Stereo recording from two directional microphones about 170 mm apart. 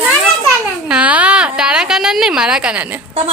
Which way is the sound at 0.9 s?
5° right (ahead or behind).